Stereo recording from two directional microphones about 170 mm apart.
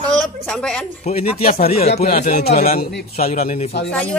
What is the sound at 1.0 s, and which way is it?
Speech, 40° left (ahead or behind).